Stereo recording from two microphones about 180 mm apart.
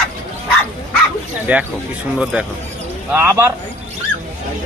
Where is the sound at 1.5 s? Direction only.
10° right (ahead or behind).